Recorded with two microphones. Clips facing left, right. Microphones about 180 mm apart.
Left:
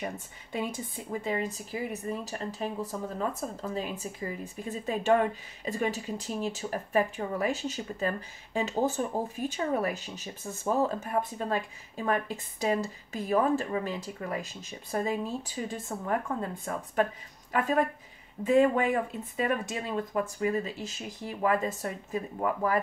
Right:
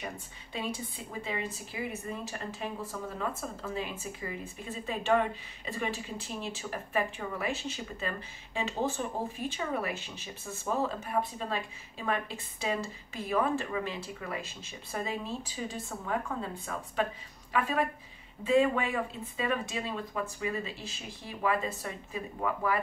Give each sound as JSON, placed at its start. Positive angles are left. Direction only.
{"t": 1.2, "sound": "speech", "side_deg": 40}